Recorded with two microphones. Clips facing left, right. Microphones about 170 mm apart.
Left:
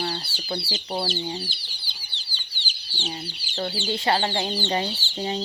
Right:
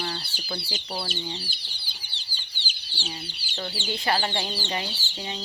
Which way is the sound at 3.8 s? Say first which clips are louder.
Left 2 dB; 25° left (ahead or behind).